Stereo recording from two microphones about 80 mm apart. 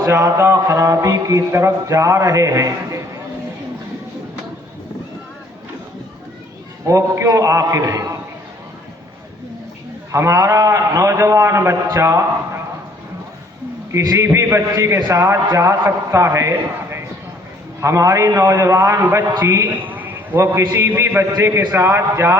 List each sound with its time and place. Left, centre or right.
0.0 s speech: right
6.8 s a man's voice: right
10.1 s a man's voice: right
13.9 s speech: right
19.8 s a man's voice: right